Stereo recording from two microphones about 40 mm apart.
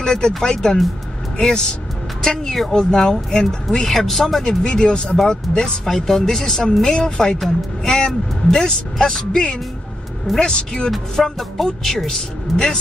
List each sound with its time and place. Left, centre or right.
0.0 s speech: centre
3.8 s speech: centre
4.6 s speech: left; by 6.8 s centre
6.8 s speech: left
11.3 s speech: centre